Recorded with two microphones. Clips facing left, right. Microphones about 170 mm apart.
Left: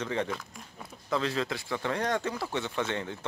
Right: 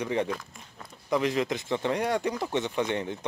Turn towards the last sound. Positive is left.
turn(degrees=-20)  # may be behind; listen again after turning